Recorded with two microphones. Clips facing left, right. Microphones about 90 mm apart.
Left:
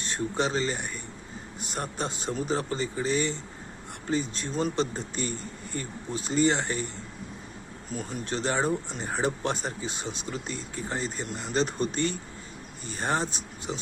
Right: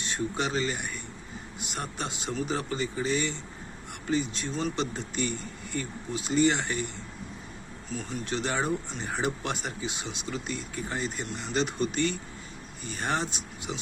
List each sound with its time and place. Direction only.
0.0 s speech: 35° left (ahead or behind)